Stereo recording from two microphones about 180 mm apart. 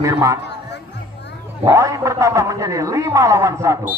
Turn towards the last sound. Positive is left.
turn(degrees=-15)  # may be behind; listen again after turning